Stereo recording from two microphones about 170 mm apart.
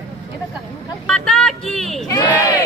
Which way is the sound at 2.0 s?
20° left (ahead or behind).